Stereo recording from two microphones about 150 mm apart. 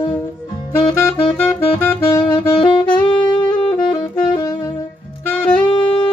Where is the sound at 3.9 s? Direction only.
25° left (ahead or behind).